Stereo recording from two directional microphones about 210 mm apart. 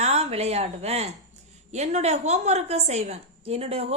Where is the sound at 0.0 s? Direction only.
30° right (ahead or behind).